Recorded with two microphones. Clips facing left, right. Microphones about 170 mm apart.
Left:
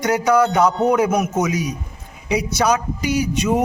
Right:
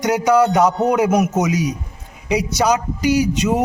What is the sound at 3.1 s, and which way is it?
Speech, 90° right.